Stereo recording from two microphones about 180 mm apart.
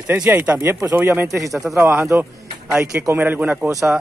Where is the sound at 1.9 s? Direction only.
10° right (ahead or behind).